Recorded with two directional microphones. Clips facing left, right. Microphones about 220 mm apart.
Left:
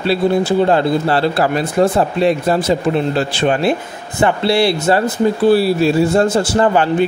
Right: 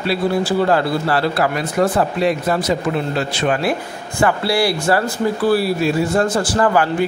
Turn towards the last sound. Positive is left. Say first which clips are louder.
# left 3 dB
turn(degrees=25)  # may be behind; listen again after turning